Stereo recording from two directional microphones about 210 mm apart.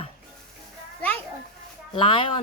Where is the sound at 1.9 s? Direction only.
25° left (ahead or behind).